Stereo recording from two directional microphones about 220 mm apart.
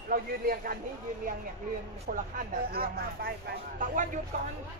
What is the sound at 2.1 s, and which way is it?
Speech, 40° right (ahead or behind).